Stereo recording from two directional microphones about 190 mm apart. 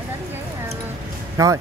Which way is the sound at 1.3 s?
20° right (ahead or behind).